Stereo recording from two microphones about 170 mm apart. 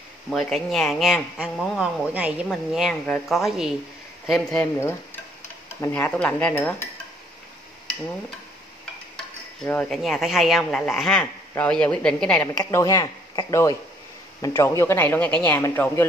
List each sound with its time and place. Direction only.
0.3 s speech: centre (ahead or behind)
4.7 s stir: 15° left (ahead or behind)
5.7 s speech: 15° left (ahead or behind)
9.7 s speech: 5° left (ahead or behind)
12.7 s speech: 20° left (ahead or behind)